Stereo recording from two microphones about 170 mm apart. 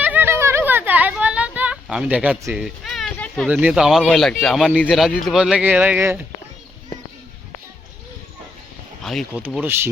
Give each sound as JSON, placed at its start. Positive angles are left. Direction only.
{"t": 0.0, "sound": "a sound", "side_deg": -10}
{"t": 3.4, "sound": "speech", "side_deg": -5}
{"t": 9.0, "sound": "speech", "side_deg": 0}
{"t": 9.5, "sound": "speech", "side_deg": -10}